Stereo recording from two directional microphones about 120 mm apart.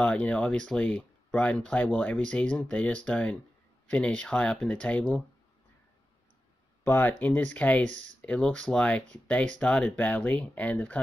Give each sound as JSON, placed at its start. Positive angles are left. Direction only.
{"t": 0.0, "sound": "speech", "side_deg": 10}
{"t": 6.8, "sound": "speech", "side_deg": 15}